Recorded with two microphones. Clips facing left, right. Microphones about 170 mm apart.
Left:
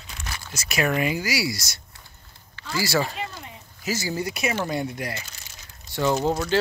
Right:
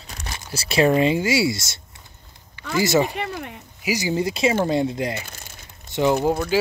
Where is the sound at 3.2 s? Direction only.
65° right (ahead or behind).